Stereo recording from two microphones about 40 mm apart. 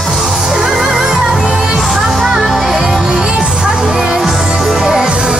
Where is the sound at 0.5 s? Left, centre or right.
Centre.